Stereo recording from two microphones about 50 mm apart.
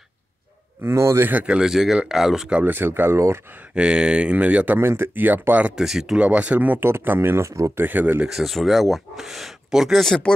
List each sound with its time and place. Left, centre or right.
0.8 s speech: right
1.6 s speech: centre
2.6 s speech: right
3.7 s speech: centre
4.7 s speech: right
5.8 s speech: centre
6.1 s speech: right
6.8 s speech: right
7.7 s speech: right
8.3 s speech: centre
9.9 s speech: centre